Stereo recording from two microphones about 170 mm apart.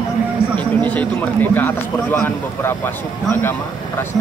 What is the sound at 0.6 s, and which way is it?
A man's voice, 10° left (ahead or behind).